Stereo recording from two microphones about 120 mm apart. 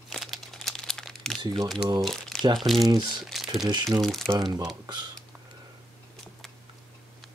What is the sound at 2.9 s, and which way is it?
Speech, 35° right (ahead or behind).